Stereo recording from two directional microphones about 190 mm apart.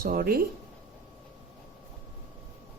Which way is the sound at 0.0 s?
50° right (ahead or behind).